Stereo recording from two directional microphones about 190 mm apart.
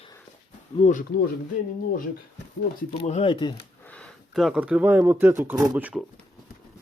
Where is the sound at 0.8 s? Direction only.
40° left (ahead or behind).